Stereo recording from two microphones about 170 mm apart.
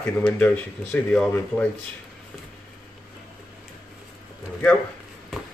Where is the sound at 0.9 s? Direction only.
5° left (ahead or behind).